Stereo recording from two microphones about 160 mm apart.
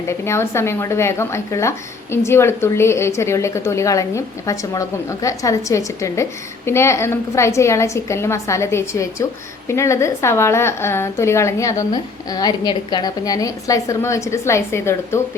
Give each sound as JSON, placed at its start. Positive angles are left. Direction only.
{"t": 0.1, "sound": "a woman's voice", "side_deg": 15}